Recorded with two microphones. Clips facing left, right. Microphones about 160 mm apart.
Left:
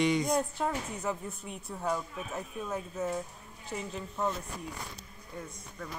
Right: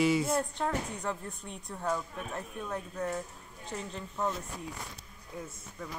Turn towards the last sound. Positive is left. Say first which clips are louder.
# left 1 dB
turn(degrees=0)  # may be behind; listen again after turning